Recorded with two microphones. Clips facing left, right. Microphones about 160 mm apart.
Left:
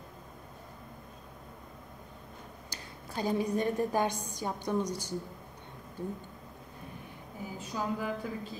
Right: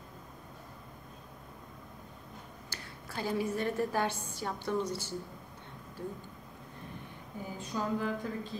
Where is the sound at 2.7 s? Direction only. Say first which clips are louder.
Even; 20° left (ahead or behind).